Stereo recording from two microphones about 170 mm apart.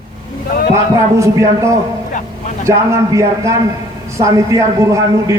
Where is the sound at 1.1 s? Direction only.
15° right (ahead or behind).